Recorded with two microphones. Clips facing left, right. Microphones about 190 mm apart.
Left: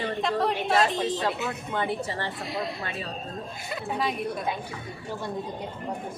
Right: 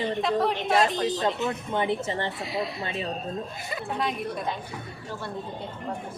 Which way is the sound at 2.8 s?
25° right (ahead or behind).